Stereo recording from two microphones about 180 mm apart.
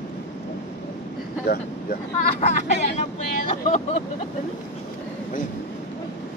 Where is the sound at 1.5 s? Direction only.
60° left (ahead or behind).